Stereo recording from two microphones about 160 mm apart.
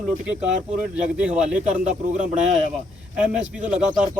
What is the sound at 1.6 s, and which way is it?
Speech, 45° right (ahead or behind).